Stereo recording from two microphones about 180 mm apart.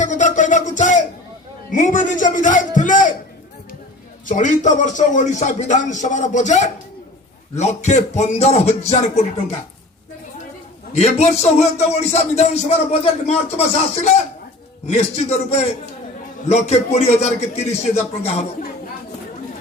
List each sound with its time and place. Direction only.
0.0 s music: 45° left (ahead or behind)
1.7 s a man's voice: 45° left (ahead or behind)
4.3 s a man's voice: 45° left (ahead or behind)
10.9 s a man's voice: 35° left (ahead or behind)